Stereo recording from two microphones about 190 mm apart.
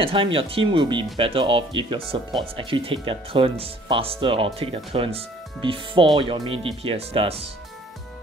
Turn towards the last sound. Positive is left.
turn(degrees=-30)  # may be behind; listen again after turning